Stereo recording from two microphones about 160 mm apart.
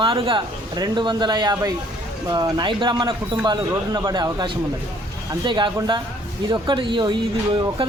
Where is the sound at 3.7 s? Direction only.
15° right (ahead or behind).